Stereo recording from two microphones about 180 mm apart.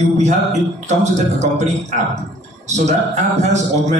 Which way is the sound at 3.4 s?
40° right (ahead or behind).